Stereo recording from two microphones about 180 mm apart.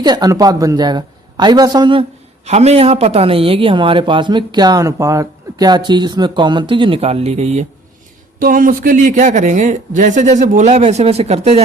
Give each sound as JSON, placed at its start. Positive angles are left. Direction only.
{"t": 0.0, "sound": "speech", "side_deg": -20}
{"t": 8.4, "sound": "a man's voice", "side_deg": -50}